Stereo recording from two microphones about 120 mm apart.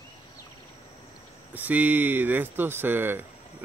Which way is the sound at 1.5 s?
15° right (ahead or behind).